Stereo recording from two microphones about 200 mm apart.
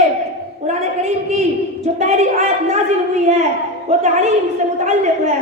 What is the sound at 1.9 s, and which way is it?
Speech, 35° right (ahead or behind).